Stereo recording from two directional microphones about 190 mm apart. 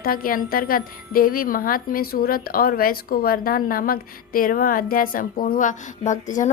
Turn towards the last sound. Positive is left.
turn(degrees=40)  # may be behind; listen again after turning